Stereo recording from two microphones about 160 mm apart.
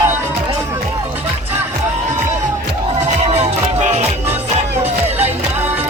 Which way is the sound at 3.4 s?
45° right (ahead or behind).